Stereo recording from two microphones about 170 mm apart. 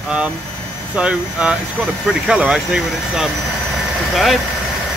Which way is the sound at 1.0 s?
5° right (ahead or behind).